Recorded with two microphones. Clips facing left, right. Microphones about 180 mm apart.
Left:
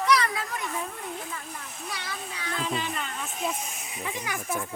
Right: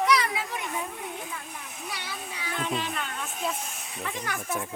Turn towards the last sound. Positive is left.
turn(degrees=0)  # may be behind; listen again after turning